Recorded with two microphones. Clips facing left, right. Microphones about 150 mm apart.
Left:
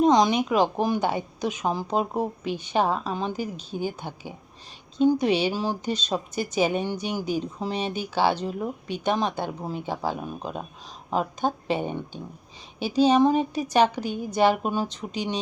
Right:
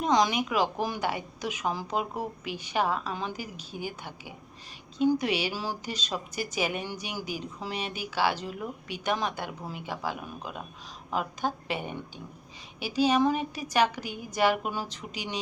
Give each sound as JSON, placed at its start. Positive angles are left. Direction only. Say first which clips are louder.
{"t": 0.0, "sound": "a woman's voice", "louder": "left 6 dB", "side_deg": 20}